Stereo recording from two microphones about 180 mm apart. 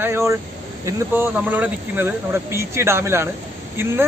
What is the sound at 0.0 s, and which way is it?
Speech, 15° right (ahead or behind).